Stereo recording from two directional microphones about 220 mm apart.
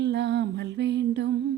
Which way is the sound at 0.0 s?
50° right (ahead or behind).